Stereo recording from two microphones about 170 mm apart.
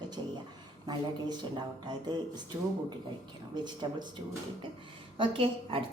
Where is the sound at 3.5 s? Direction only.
25° right (ahead or behind).